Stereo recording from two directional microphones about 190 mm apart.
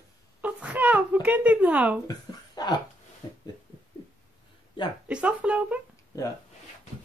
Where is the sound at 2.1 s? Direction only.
20° left (ahead or behind).